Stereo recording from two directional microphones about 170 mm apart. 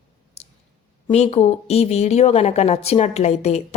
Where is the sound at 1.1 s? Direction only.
40° left (ahead or behind).